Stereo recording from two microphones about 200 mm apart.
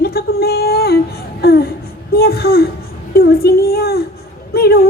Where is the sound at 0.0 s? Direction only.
50° left (ahead or behind).